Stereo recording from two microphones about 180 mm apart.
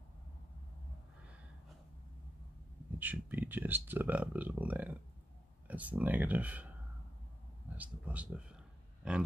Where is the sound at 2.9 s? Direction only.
10° right (ahead or behind).